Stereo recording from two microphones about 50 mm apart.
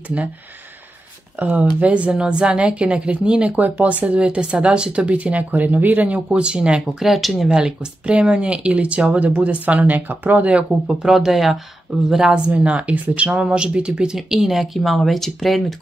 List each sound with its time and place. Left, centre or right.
1.4 s speech: right
7.0 s speech: centre
7.5 s speech: centre
10.7 s speech: centre
12.4 s speech: right
14.1 s speech: centre